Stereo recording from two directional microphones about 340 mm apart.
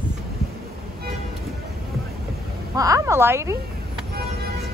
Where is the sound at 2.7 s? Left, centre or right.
Centre.